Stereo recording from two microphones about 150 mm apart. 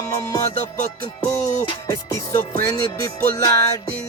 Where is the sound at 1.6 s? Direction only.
20° left (ahead or behind).